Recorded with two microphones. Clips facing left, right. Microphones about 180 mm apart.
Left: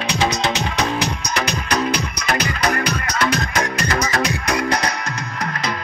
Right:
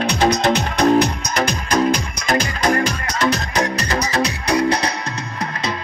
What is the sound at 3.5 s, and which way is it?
Music, 40° right (ahead or behind).